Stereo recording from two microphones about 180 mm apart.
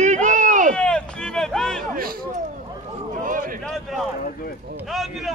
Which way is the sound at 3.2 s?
50° right (ahead or behind).